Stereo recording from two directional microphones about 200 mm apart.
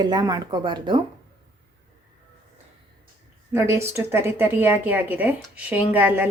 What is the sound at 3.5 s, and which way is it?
A woman's voice, 10° right (ahead or behind).